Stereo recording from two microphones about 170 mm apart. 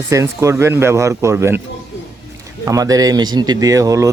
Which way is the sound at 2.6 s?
20° right (ahead or behind).